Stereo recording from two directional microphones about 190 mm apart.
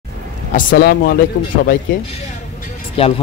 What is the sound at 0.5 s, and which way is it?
Speech, 45° left (ahead or behind).